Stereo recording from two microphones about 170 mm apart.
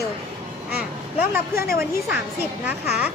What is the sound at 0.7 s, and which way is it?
Speech, 10° right (ahead or behind).